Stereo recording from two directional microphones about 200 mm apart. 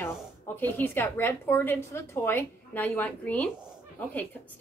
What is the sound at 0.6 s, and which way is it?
A woman's voice, 10° left (ahead or behind).